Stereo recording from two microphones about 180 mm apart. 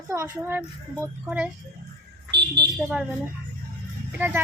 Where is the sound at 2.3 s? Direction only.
70° right (ahead or behind).